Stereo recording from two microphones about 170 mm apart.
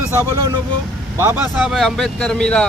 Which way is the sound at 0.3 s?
20° right (ahead or behind).